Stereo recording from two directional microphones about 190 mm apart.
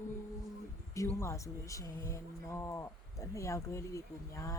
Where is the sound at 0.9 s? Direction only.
15° left (ahead or behind).